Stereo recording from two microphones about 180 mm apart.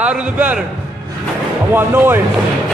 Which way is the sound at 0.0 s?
5° right (ahead or behind).